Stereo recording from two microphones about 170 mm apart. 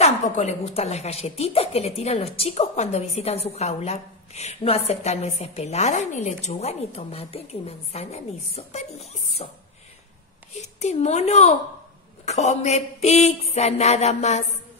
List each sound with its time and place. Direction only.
0.0 s a woman's voice: 40° left (ahead or behind)